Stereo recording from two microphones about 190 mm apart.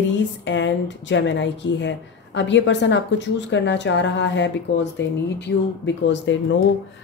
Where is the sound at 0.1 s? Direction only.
70° left (ahead or behind).